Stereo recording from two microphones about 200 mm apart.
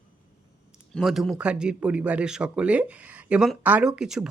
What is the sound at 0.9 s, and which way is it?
Speech, centre (ahead or behind).